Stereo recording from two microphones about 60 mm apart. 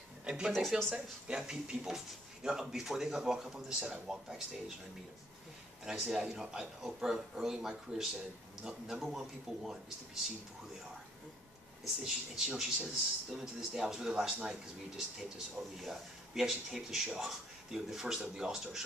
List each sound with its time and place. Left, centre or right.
0.2 s a sound: centre
0.5 s speech: centre
0.9 s speech: centre
5.9 s speech: centre
11.8 s speech: centre